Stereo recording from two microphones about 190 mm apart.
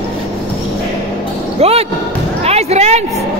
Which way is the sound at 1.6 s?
35° right (ahead or behind).